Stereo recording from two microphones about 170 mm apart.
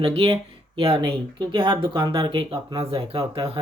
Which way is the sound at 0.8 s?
30° right (ahead or behind).